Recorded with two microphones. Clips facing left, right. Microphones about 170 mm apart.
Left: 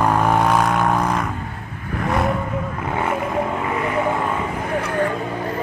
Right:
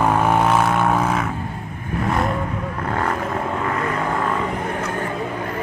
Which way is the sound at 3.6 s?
10° left (ahead or behind).